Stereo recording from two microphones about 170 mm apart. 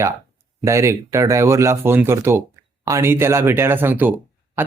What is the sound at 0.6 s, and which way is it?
Speech, 15° right (ahead or behind).